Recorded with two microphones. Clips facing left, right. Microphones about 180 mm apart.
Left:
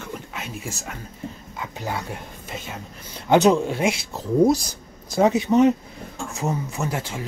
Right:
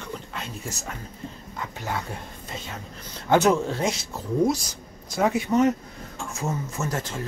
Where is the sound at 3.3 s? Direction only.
20° left (ahead or behind).